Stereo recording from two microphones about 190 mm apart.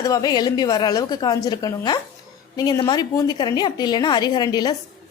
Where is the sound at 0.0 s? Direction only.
20° left (ahead or behind).